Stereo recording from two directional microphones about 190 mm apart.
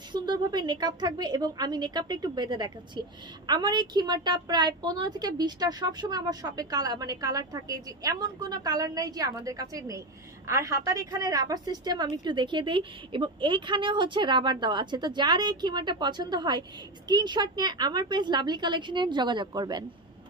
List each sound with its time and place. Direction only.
0.1 s a woman's voice: 25° right (ahead or behind)